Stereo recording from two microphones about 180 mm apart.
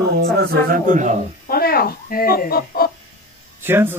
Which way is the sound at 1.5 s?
55° left (ahead or behind).